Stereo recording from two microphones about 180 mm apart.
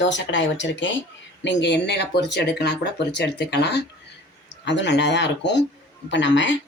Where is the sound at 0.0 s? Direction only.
90° left.